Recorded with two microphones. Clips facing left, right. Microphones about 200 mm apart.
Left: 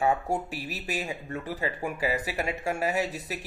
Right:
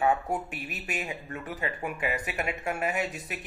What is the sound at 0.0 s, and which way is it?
Speech, 30° left (ahead or behind).